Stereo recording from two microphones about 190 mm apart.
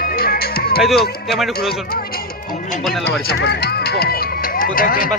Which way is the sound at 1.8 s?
50° left (ahead or behind).